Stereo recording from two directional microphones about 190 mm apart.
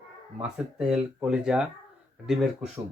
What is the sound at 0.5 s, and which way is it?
Speech, 5° right (ahead or behind).